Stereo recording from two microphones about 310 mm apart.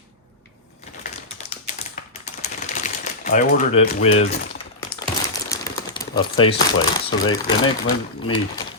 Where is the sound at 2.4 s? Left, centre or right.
Left.